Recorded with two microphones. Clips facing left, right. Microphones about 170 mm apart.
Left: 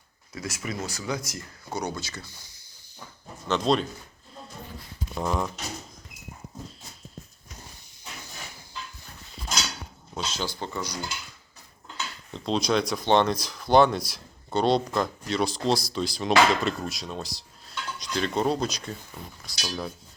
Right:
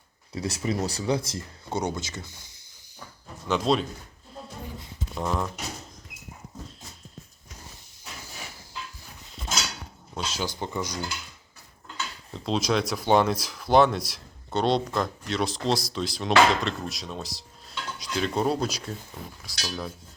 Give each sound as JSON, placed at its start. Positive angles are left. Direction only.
{"t": 0.3, "sound": "speech", "side_deg": -30}
{"t": 3.5, "sound": "speech", "side_deg": -5}
{"t": 5.1, "sound": "speech", "side_deg": 0}
{"t": 10.2, "sound": "speech", "side_deg": -10}
{"t": 12.3, "sound": "speech", "side_deg": -5}